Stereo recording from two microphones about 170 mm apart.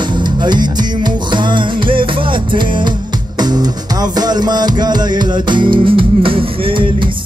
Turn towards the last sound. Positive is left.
turn(degrees=-30)  # may be behind; listen again after turning